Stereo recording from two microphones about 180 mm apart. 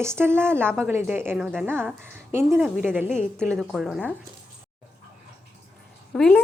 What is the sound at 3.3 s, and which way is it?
Speech, 5° left (ahead or behind).